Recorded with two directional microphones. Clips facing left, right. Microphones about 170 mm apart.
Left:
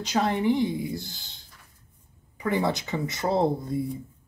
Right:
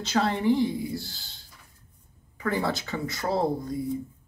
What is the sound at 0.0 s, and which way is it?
Speech, 15° left (ahead or behind).